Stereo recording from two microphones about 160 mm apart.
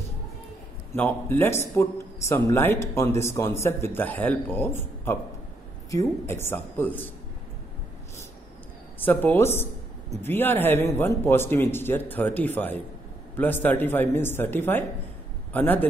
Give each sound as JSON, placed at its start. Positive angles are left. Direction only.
{"t": 0.9, "sound": "a man's voice", "side_deg": 15}
{"t": 9.0, "sound": "a man's voice", "side_deg": 10}